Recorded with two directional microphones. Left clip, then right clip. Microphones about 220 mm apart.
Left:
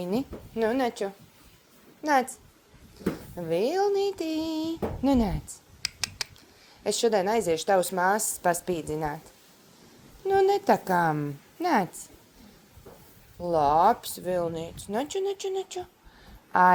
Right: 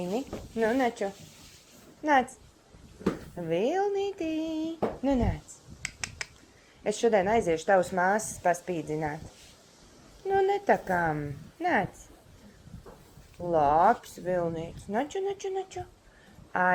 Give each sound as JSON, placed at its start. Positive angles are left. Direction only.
{"t": 0.0, "sound": "speech", "side_deg": 55}
{"t": 3.3, "sound": "speech", "side_deg": 45}
{"t": 6.8, "sound": "speech", "side_deg": 45}
{"t": 10.2, "sound": "speech", "side_deg": 45}
{"t": 13.5, "sound": "speech", "side_deg": 45}